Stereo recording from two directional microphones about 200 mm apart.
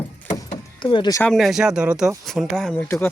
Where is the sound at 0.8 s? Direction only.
25° left (ahead or behind).